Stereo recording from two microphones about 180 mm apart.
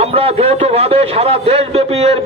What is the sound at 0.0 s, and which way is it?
A man's voice, 35° right (ahead or behind).